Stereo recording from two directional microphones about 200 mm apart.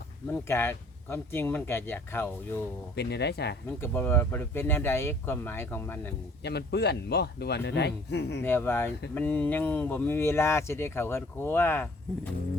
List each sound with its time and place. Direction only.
0.3 s speech: 10° left (ahead or behind)
2.9 s speech: 55° left (ahead or behind)
3.8 s speech: 10° left (ahead or behind)
6.4 s speech: 55° left (ahead or behind)
8.4 s speech: 10° left (ahead or behind)